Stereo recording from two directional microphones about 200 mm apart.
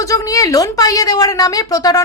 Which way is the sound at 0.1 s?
15° left (ahead or behind).